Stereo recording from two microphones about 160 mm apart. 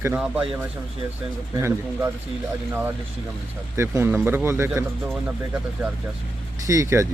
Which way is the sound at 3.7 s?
15° right (ahead or behind).